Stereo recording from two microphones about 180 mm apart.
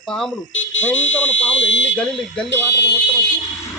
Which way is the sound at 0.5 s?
90° left.